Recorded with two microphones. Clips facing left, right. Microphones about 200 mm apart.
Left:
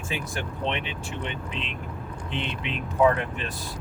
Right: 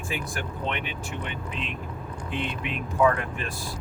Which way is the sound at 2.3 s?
20° left (ahead or behind).